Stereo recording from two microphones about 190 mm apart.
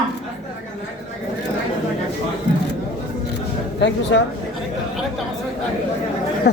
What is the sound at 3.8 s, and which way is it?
Speech, 70° left (ahead or behind).